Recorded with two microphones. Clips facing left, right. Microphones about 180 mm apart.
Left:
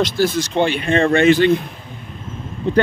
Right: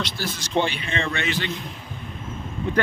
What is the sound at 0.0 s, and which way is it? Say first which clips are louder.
Speech: left 13 dB; 55° left (ahead or behind).